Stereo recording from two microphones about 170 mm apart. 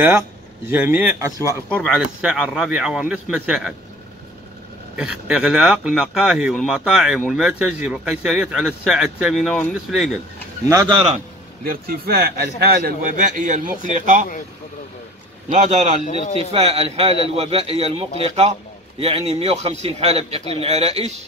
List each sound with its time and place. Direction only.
0.7 s speech: 10° right (ahead or behind)
1.5 s speech: 10° left (ahead or behind)
1.9 s speech: 5° right (ahead or behind)
4.9 s speech: 5° right (ahead or behind)
10.7 s speech: 25° right (ahead or behind)
11.6 s a man's voice: 60° right (ahead or behind)
15.5 s a man's voice: 45° right (ahead or behind)